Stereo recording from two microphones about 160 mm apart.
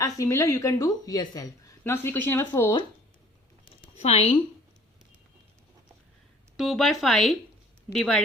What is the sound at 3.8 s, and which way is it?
Speech, 40° left (ahead or behind).